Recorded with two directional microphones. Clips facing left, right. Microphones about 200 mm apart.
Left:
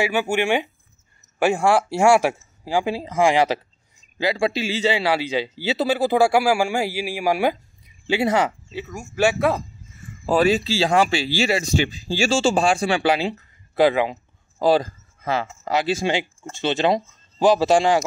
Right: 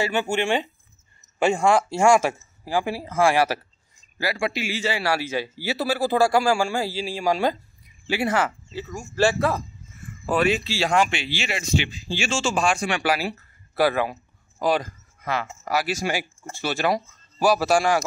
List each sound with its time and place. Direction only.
0.0 s a man's voice: 10° left (ahead or behind)
8.1 s speech: 20° left (ahead or behind)
8.8 s a man's voice: 10° left (ahead or behind)
10.2 s speech: 35° left (ahead or behind)